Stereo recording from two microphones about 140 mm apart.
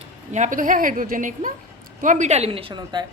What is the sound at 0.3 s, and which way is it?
A woman's voice, 65° right (ahead or behind).